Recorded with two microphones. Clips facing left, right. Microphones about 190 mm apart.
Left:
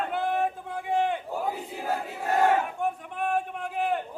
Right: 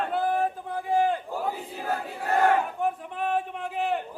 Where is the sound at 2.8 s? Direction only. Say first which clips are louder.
Right 1 dB; centre (ahead or behind).